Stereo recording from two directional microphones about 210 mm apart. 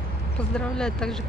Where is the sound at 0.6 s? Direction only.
5° left (ahead or behind).